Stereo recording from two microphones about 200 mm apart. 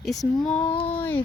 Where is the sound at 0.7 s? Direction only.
30° left (ahead or behind).